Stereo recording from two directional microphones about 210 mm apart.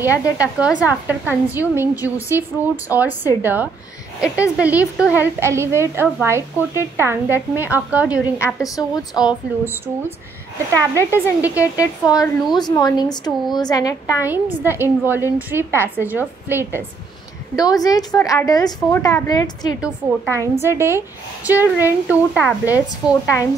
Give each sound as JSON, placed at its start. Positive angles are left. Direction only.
{"t": 0.0, "sound": "a woman's voice", "side_deg": -5}
{"t": 8.6, "sound": "a woman's voice", "side_deg": 15}
{"t": 11.0, "sound": "a woman's voice", "side_deg": -10}
{"t": 11.7, "sound": "a woman's voice", "side_deg": 15}
{"t": 14.2, "sound": "a woman's voice", "side_deg": -10}
{"t": 17.6, "sound": "a woman's voice", "side_deg": 20}
{"t": 20.3, "sound": "a woman's voice", "side_deg": -10}